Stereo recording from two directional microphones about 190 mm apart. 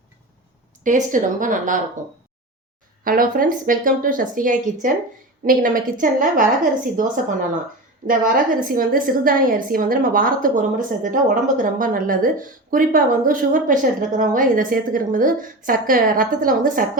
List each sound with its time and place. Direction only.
0.9 s a woman's voice: 45° right (ahead or behind)
3.0 s a woman's voice: 50° right (ahead or behind)